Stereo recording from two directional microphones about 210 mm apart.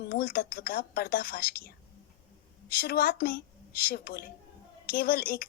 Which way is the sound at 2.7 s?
45° left (ahead or behind).